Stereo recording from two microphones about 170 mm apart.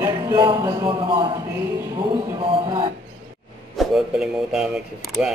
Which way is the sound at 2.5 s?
30° right (ahead or behind).